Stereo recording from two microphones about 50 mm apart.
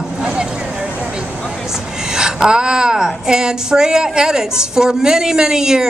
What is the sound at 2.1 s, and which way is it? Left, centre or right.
Speech, centre.